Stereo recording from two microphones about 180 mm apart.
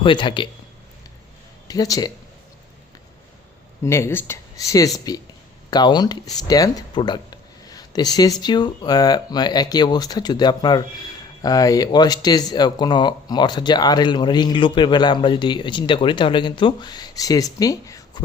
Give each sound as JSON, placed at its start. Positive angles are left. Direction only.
{"t": 0.0, "sound": "speech", "side_deg": 25}
{"t": 1.6, "sound": "speech", "side_deg": 20}
{"t": 3.8, "sound": "speech", "side_deg": 15}